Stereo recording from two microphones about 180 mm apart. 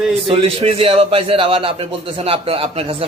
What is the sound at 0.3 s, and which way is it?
A man's voice, 30° right (ahead or behind).